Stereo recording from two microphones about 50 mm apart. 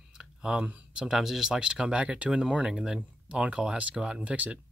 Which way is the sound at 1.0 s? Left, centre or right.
Centre.